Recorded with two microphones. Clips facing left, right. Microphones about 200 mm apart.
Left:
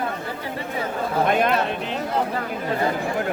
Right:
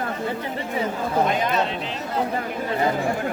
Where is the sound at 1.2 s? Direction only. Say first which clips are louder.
Left 3 dB; 60° left (ahead or behind).